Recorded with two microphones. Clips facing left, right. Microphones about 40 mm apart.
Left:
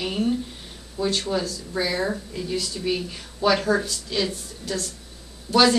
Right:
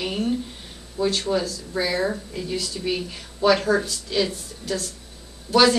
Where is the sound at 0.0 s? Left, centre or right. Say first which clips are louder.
Even; centre.